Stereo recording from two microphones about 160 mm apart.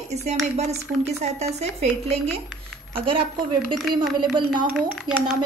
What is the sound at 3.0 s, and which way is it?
Speech, 30° right (ahead or behind).